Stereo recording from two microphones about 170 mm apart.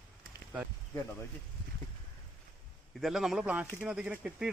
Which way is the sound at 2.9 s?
Centre (ahead or behind).